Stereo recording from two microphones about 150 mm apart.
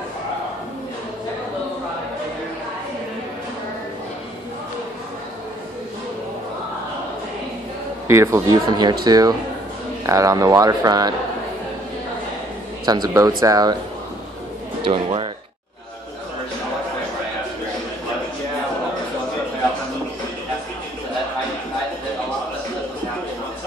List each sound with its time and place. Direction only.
8.1 s speech: 20° right (ahead or behind)
12.8 s speech: 25° right (ahead or behind)
14.8 s speech: 35° right (ahead or behind)